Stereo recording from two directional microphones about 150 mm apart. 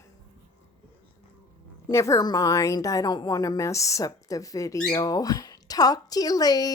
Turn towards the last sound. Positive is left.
turn(degrees=25)  # may be behind; listen again after turning